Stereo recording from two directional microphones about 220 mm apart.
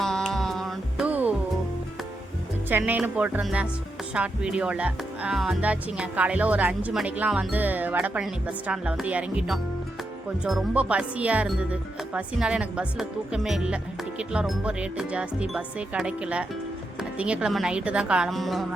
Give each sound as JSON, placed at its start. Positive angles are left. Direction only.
{"t": 0.0, "sound": "music", "side_deg": 0}
{"t": 2.6, "sound": "speech", "side_deg": -10}